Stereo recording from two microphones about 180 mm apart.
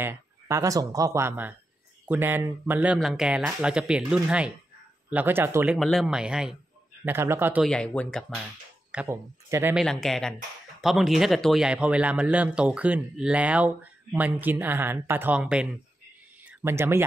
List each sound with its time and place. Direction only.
0.0 s a man's voice: 15° right (ahead or behind)
5.8 s a man's voice: centre (ahead or behind)
7.6 s speech: 5° left (ahead or behind)
8.9 s a man's voice: 15° right (ahead or behind)
9.8 s a man's voice: centre (ahead or behind); by 17.0 s 15° right (ahead or behind)